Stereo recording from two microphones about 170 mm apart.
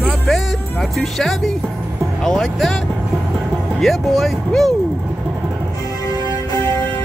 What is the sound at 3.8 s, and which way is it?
Speech, centre (ahead or behind).